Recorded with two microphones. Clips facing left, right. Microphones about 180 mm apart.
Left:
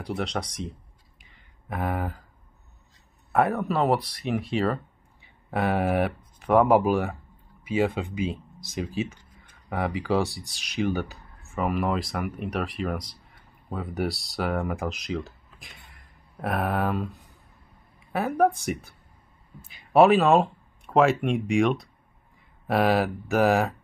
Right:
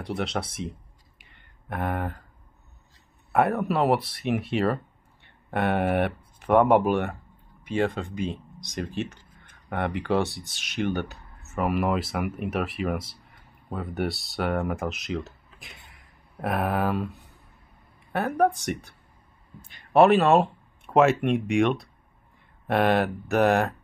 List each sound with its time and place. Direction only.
0.0 s a sound: centre (ahead or behind)
3.3 s speech: centre (ahead or behind)
18.1 s speech: centre (ahead or behind)